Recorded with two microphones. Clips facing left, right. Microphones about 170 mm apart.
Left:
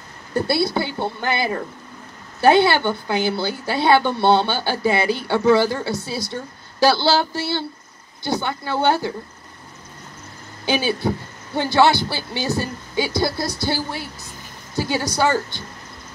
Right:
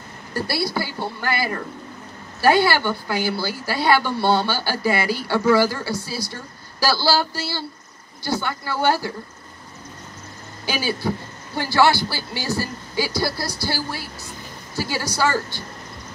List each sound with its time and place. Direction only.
0.3 s speech: 20° left (ahead or behind)
10.6 s speech: 20° left (ahead or behind)